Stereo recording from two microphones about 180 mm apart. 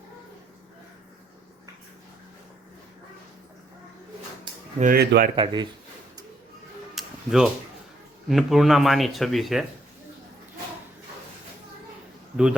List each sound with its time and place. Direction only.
4.8 s speech: 55° right (ahead or behind)
5.4 s speech: 25° right (ahead or behind)
6.9 s tick-tock: 5° right (ahead or behind)
8.3 s speech: centre (ahead or behind)